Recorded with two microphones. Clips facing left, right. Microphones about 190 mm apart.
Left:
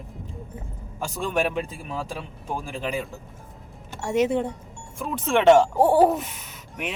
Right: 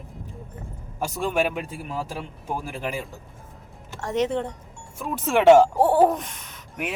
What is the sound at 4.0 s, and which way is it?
Speech, 10° left (ahead or behind).